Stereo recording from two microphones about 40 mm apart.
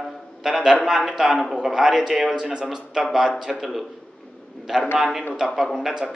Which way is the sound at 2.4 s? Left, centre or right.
Right.